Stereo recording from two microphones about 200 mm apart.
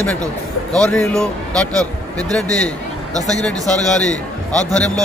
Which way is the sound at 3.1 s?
20° right (ahead or behind).